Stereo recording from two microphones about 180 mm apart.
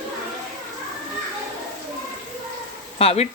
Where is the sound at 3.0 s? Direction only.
35° left (ahead or behind).